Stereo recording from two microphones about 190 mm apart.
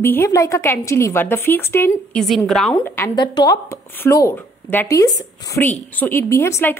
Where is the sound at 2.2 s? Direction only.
Centre (ahead or behind).